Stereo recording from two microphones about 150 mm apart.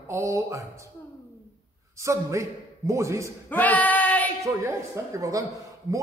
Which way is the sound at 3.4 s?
10° left (ahead or behind).